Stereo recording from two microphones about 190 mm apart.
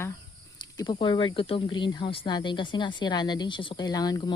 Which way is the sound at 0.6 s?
20° left (ahead or behind).